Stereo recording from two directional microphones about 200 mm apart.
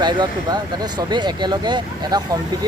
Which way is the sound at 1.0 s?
20° right (ahead or behind).